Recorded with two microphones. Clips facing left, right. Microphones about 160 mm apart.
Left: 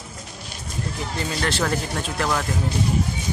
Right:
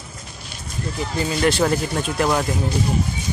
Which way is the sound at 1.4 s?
15° right (ahead or behind).